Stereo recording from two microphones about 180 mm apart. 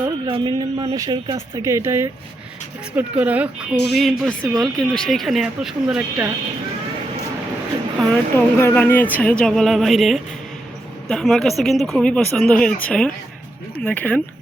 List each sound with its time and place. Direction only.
0.0 s speech: 25° right (ahead or behind); by 6.3 s 5° right (ahead or behind)
8.4 s speech: 10° left (ahead or behind)